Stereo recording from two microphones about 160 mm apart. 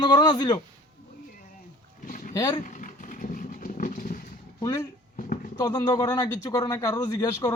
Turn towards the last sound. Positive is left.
turn(degrees=20)  # may be behind; listen again after turning